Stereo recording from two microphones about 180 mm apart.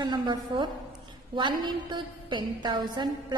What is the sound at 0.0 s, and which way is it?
A woman's voice, 25° right (ahead or behind).